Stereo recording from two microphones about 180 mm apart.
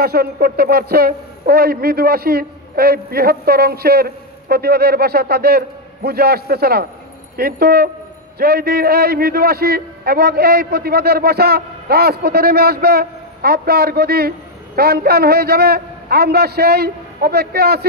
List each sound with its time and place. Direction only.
0.0 s a man's voice: 55° right (ahead or behind)